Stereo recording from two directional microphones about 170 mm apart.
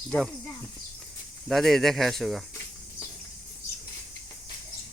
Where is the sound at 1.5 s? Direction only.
Centre (ahead or behind).